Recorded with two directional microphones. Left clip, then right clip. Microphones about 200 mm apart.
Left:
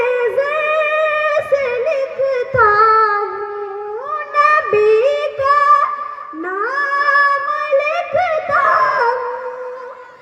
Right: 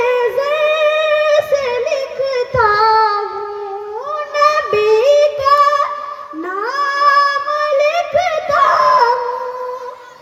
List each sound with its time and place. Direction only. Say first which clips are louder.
0.0 s singing: right 1 dB; 55° left (ahead or behind)
4.4 s music: left 1 dB; 55° left (ahead or behind)
6.6 s singing: right 2 dB; 55° left (ahead or behind)